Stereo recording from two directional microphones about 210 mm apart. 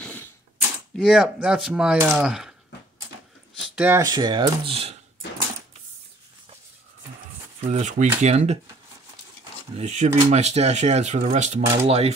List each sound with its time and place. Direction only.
0.0 s a sound: 10° left (ahead or behind)
0.6 s speech: 5° right (ahead or behind)
3.7 s speech: 10° right (ahead or behind); by 4.9 s 25° right (ahead or behind)
7.6 s speech: 30° right (ahead or behind)
9.8 s speech: 35° right (ahead or behind)